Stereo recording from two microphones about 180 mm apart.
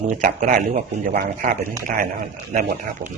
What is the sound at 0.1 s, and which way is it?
Speech, 45° right (ahead or behind).